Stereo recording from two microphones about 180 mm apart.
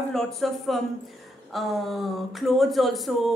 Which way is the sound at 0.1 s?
Centre (ahead or behind).